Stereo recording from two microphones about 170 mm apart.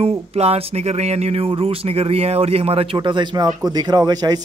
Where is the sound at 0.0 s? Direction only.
35° right (ahead or behind).